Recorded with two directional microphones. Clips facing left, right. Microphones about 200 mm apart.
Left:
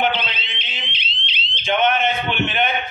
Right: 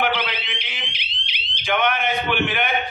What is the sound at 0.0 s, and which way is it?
Fire alarm, 25° left (ahead or behind).